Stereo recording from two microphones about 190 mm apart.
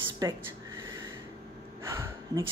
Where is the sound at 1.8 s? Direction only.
15° right (ahead or behind).